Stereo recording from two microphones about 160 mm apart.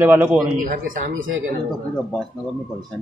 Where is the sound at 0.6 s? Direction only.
55° right (ahead or behind).